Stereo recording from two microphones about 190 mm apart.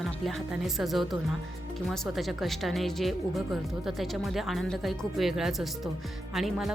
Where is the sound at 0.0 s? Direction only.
Centre (ahead or behind).